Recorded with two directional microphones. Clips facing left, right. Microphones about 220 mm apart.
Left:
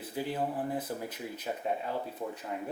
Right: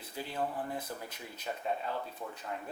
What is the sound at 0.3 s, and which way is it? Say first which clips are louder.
Speech: even; 20° left (ahead or behind).